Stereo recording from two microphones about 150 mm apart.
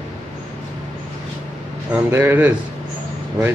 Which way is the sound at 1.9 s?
10° right (ahead or behind).